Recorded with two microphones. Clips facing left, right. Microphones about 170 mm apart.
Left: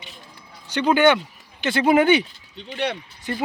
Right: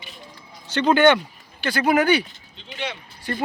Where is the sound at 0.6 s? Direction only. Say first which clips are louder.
Right 1 dB; 10° left (ahead or behind).